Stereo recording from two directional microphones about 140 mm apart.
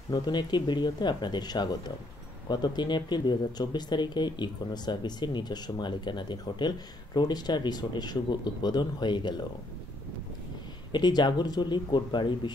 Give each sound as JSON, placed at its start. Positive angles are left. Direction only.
{"t": 0.1, "sound": "speech", "side_deg": 30}
{"t": 10.9, "sound": "speech", "side_deg": 30}